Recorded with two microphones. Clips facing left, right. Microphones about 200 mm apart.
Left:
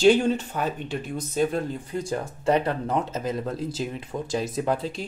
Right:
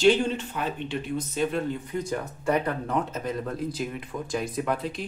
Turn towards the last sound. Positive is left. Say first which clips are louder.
# left 2 dB
turn(degrees=30)  # may be behind; listen again after turning